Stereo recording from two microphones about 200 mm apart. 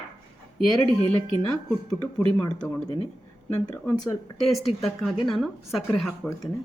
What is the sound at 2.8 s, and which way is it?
Speech, 25° left (ahead or behind).